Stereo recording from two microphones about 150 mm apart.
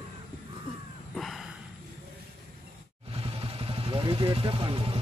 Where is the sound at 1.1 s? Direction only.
Centre (ahead or behind).